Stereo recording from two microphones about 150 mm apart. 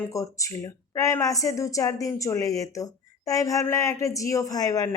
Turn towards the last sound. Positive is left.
turn(degrees=25)  # may be behind; listen again after turning